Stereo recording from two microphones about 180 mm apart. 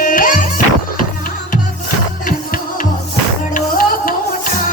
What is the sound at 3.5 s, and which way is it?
Music, 50° left (ahead or behind).